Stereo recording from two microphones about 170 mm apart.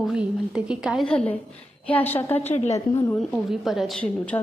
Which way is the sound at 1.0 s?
5° left (ahead or behind).